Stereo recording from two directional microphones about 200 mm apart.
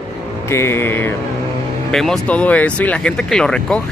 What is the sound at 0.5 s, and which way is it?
Speech, 15° left (ahead or behind).